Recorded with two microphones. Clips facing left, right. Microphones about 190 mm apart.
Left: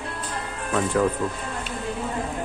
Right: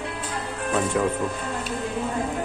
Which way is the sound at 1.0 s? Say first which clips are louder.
Left 3 dB; 10° right (ahead or behind).